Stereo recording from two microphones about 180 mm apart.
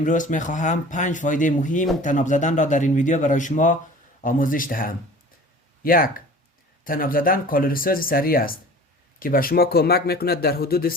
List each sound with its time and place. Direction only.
0.0 s speech: 45° left (ahead or behind)